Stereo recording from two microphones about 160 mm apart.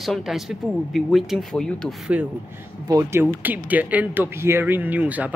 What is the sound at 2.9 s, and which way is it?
Speech, 15° right (ahead or behind).